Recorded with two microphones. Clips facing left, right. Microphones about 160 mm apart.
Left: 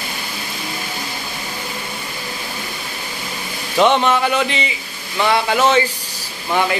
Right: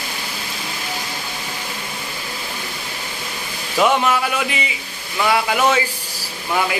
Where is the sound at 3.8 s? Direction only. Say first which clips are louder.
Left 2 dB; 5° right (ahead or behind).